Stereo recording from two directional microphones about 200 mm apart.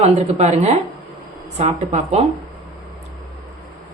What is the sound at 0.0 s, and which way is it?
Speech, 35° right (ahead or behind).